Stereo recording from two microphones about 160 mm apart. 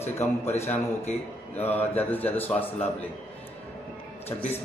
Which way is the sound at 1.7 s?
10° left (ahead or behind).